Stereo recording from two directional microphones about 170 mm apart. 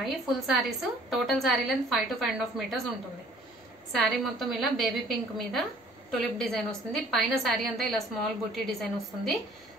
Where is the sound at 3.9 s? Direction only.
Centre (ahead or behind).